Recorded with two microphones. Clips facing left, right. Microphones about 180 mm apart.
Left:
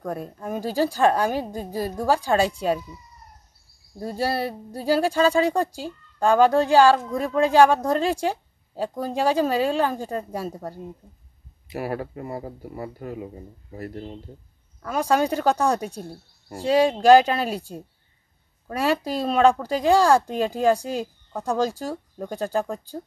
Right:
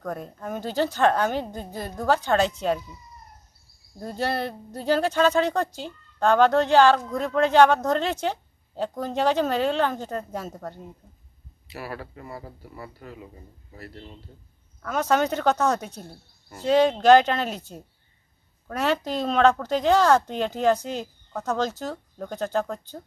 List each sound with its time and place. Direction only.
0.0 s speech: 10° left (ahead or behind)
4.0 s speech: 5° left (ahead or behind)
11.7 s speech: 45° left (ahead or behind)
14.8 s speech: 10° left (ahead or behind)